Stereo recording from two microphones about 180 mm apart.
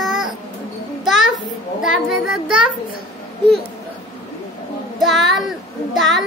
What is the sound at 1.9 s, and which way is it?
Speech, 50° left (ahead or behind).